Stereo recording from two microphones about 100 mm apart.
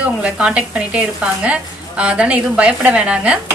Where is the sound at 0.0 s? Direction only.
10° right (ahead or behind).